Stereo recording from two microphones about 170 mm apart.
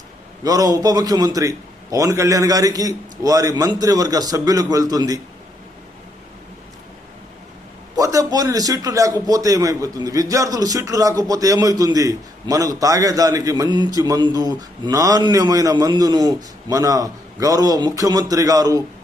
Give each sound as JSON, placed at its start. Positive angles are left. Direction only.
{"t": 0.4, "sound": "a man's voice", "side_deg": -20}
{"t": 7.9, "sound": "a man's voice", "side_deg": -20}